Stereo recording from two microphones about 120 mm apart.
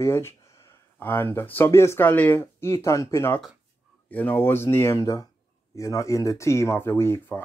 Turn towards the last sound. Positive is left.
turn(degrees=20)  # may be behind; listen again after turning